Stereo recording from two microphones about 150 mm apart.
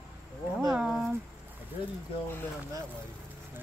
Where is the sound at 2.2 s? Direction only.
15° left (ahead or behind).